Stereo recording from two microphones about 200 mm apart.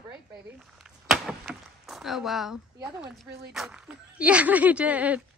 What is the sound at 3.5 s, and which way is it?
Speech, 5° right (ahead or behind).